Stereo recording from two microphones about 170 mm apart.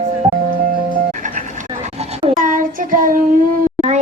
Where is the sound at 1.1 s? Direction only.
50° right (ahead or behind).